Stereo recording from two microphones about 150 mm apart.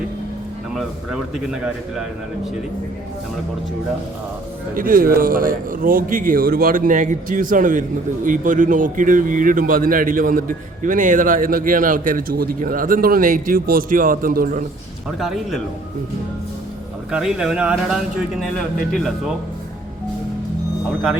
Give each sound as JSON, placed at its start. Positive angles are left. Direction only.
{"t": 0.7, "sound": "speech", "side_deg": -5}
{"t": 4.7, "sound": "a man's voice", "side_deg": -70}
{"t": 15.2, "sound": "speech", "side_deg": 0}
{"t": 17.1, "sound": "speech", "side_deg": -5}